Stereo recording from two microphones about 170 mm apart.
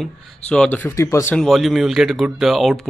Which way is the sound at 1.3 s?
Centre (ahead or behind).